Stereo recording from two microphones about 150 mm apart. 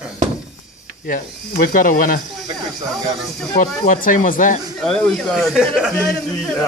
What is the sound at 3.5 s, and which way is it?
Speech, 65° left (ahead or behind).